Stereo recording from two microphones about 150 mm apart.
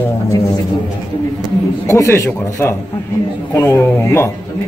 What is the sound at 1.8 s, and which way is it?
A man's voice, 20° left (ahead or behind).